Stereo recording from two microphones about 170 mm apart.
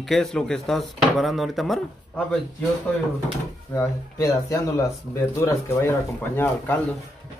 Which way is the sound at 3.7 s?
20° left (ahead or behind).